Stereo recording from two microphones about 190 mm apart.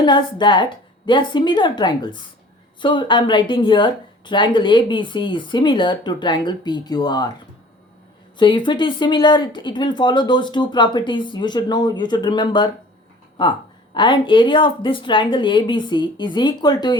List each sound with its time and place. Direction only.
0.0 s a woman's voice: 25° left (ahead or behind)
8.4 s a woman's voice: 25° left (ahead or behind)
13.9 s a woman's voice: 25° left (ahead or behind)